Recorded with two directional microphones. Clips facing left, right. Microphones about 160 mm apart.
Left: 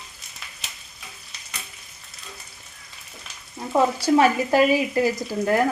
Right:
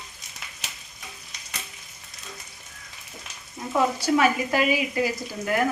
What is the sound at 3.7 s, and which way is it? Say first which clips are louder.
Speech: left 4 dB; 30° left (ahead or behind).